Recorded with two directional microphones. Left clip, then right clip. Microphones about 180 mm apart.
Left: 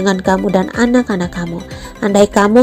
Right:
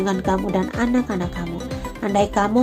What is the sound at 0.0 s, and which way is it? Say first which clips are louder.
Speech: left 7 dB; 35° left (ahead or behind).